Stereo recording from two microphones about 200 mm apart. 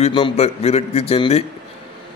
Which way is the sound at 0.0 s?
30° left (ahead or behind).